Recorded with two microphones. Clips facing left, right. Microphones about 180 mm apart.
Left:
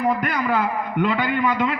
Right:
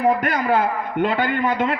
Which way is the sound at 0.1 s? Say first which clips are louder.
Right 3 dB; 45° right (ahead or behind).